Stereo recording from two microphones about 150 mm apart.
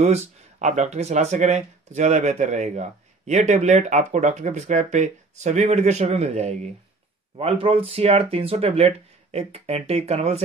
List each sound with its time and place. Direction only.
0.0 s speech: 50° right (ahead or behind)